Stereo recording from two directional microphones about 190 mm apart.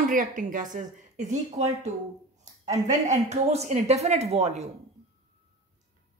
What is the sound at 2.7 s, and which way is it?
Speech, 40° right (ahead or behind).